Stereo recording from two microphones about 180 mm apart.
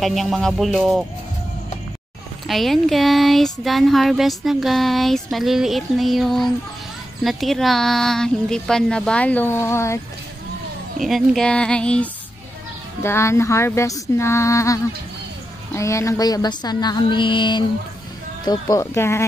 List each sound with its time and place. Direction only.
0.0 s speech: centre (ahead or behind)
2.4 s speech: centre (ahead or behind)
11.0 s speech: centre (ahead or behind); by 19.2 s 15° left (ahead or behind)